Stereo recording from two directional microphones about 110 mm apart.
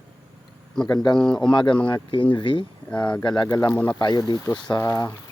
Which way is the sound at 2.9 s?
10° left (ahead or behind).